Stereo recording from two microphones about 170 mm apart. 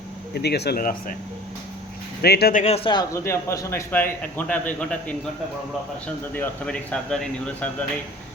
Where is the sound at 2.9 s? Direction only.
20° left (ahead or behind).